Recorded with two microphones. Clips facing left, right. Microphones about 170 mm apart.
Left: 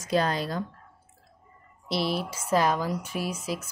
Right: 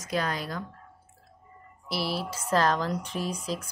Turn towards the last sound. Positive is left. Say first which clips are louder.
# even
turn(degrees=10)  # may be behind; listen again after turning